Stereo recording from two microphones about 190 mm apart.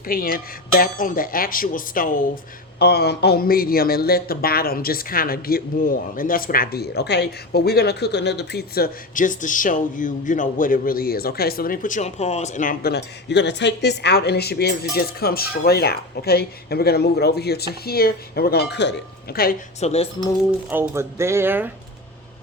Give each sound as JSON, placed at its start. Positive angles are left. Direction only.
{"t": 0.1, "sound": "a sound", "side_deg": 50}
{"t": 19.8, "sound": "speech", "side_deg": 35}
{"t": 20.7, "sound": "speech", "side_deg": -10}